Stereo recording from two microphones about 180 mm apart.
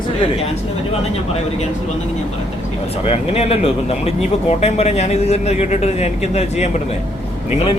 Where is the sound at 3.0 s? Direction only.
35° left (ahead or behind).